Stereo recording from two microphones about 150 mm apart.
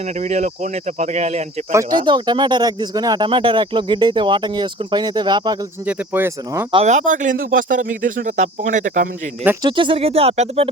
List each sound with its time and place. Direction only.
0.2 s speech: 50° right (ahead or behind)
1.7 s speech: 25° right (ahead or behind)
5.8 s speech: 10° right (ahead or behind)
6.8 s speech: 55° right (ahead or behind)
9.6 s speech: 35° right (ahead or behind)